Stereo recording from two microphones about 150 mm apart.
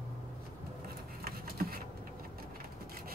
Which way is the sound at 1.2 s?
80° right.